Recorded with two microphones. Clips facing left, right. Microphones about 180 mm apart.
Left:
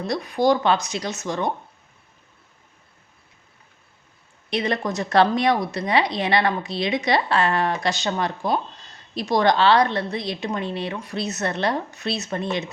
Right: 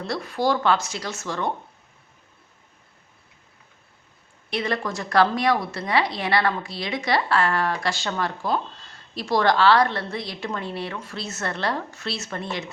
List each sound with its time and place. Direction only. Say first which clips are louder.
0.0 s speech: left 4 dB; 15° left (ahead or behind)
4.4 s a woman's voice: left 2 dB; 20° left (ahead or behind)